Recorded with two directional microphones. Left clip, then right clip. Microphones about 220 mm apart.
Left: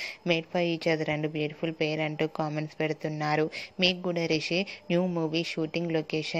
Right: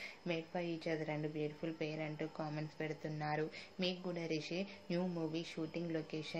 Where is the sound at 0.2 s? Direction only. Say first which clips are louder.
Left 14 dB; 40° left (ahead or behind).